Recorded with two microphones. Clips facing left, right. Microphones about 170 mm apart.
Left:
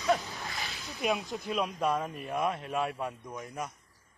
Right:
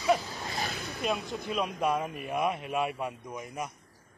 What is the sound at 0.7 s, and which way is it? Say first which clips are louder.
Snake: right 6 dB; 65° right (ahead or behind).